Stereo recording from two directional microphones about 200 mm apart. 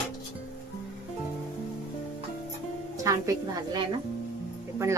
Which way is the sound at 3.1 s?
20° right (ahead or behind).